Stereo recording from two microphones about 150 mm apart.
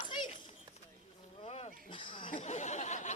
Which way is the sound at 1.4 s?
45° left (ahead or behind).